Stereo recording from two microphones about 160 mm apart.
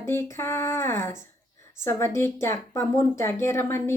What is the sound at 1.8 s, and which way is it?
Speech, 15° left (ahead or behind).